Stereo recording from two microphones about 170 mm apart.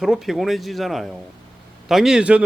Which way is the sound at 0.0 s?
Centre (ahead or behind).